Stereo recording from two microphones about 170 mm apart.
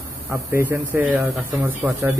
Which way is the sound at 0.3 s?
10° right (ahead or behind).